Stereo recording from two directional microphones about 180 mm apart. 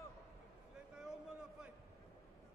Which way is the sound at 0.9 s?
5° right (ahead or behind).